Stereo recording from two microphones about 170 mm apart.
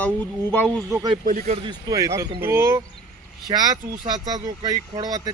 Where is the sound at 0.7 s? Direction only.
20° right (ahead or behind).